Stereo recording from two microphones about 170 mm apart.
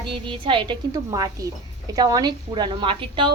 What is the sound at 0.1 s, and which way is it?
A woman's voice, 30° right (ahead or behind).